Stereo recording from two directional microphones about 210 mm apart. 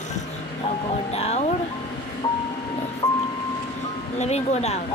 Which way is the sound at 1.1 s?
30° left (ahead or behind).